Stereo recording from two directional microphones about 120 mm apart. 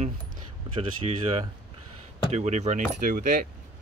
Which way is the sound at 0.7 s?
50° right (ahead or behind).